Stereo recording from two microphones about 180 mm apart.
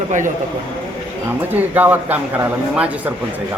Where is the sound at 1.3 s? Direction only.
10° right (ahead or behind).